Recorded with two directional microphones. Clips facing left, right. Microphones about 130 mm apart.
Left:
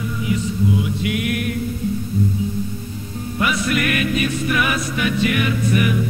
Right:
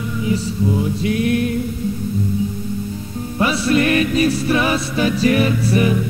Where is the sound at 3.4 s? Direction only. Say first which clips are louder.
Right 4 dB; 30° right (ahead or behind).